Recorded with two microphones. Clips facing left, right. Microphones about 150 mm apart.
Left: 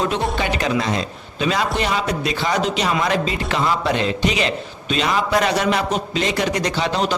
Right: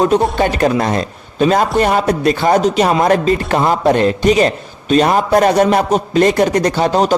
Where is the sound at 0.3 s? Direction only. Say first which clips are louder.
Right 7 dB; 45° right (ahead or behind).